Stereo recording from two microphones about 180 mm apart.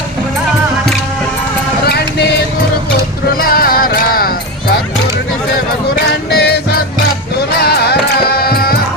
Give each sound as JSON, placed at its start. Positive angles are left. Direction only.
{"t": 1.8, "sound": "music", "side_deg": 60}
{"t": 3.4, "sound": "music", "side_deg": 55}
{"t": 6.3, "sound": "music", "side_deg": 65}
{"t": 7.6, "sound": "music", "side_deg": 65}